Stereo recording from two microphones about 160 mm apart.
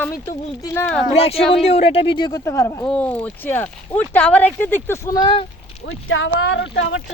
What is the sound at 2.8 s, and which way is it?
Speech, 10° left (ahead or behind).